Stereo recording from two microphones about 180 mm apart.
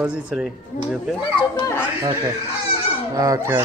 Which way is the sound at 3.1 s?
20° right (ahead or behind).